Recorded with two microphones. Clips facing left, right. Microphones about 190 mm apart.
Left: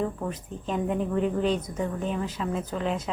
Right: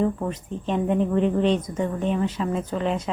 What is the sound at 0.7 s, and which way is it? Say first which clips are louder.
A woman's voice: right 5 dB; 5° left (ahead or behind).